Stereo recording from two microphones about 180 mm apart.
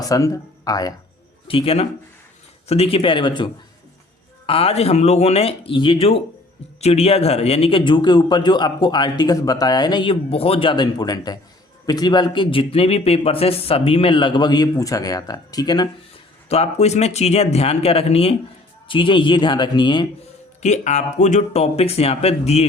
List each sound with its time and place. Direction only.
0.0 s speech: 20° left (ahead or behind)
1.5 s a man's voice: 30° left (ahead or behind)
16.5 s a man's voice: 35° left (ahead or behind)
20.6 s speech: 40° left (ahead or behind)